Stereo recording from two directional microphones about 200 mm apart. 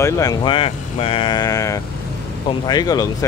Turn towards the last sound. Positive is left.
turn(degrees=20)  # may be behind; listen again after turning